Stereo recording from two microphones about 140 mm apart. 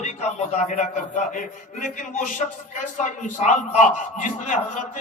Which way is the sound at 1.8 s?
65° left (ahead or behind).